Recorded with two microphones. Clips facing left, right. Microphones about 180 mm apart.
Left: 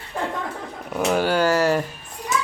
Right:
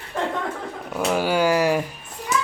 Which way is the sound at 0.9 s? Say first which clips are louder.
Left 1 dB; centre (ahead or behind).